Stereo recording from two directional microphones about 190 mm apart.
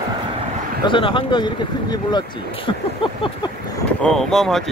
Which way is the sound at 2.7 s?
25° left (ahead or behind).